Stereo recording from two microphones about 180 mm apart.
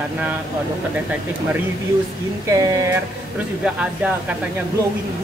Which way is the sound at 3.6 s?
5° right (ahead or behind).